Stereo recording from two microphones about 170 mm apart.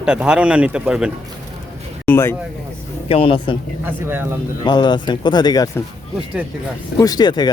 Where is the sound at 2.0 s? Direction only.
10° left (ahead or behind).